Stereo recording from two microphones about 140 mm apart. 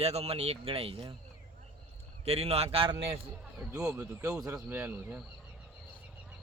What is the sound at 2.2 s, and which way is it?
Speech, 45° right (ahead or behind).